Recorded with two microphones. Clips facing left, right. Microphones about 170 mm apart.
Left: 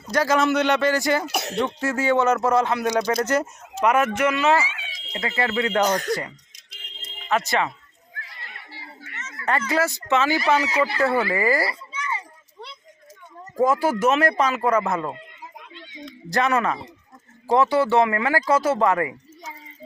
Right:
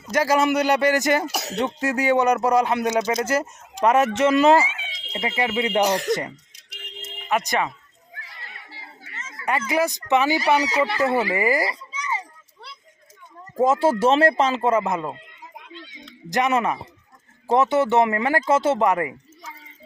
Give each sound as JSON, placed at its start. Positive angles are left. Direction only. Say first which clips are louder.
{"t": 0.1, "sound": "speech", "louder": "right 1 dB", "side_deg": -10}
{"t": 1.3, "sound": "speech", "louder": "left 2 dB", "side_deg": 0}
{"t": 1.5, "sound": "speech", "louder": "right 1 dB", "side_deg": -20}
{"t": 3.2, "sound": "speech", "louder": "left 1 dB", "side_deg": -5}
{"t": 3.8, "sound": "speech", "louder": "right 2 dB", "side_deg": -30}
{"t": 4.8, "sound": "speech", "louder": "right 2 dB", "side_deg": -20}
{"t": 9.4, "sound": "speech", "louder": "even", "side_deg": -10}
{"t": 13.6, "sound": "a man's voice", "louder": "right 2 dB", "side_deg": -25}